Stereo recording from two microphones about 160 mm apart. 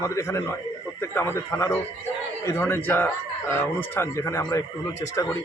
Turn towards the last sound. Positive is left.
turn(degrees=20)  # may be behind; listen again after turning